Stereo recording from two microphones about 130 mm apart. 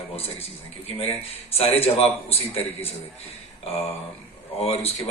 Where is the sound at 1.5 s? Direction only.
50° left (ahead or behind).